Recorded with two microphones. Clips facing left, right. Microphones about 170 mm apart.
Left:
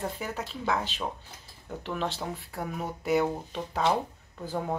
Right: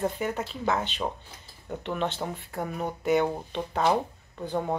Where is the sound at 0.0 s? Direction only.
Centre (ahead or behind).